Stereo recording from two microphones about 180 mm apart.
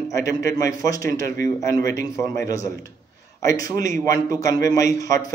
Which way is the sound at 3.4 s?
20° left (ahead or behind).